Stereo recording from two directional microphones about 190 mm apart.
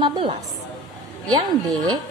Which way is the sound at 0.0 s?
25° right (ahead or behind).